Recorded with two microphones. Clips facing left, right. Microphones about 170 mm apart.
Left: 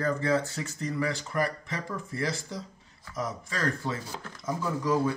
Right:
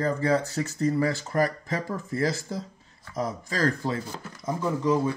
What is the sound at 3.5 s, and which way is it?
Speech, 35° right (ahead or behind).